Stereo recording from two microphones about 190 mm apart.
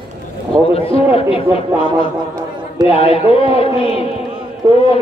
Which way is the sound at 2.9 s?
30° left (ahead or behind).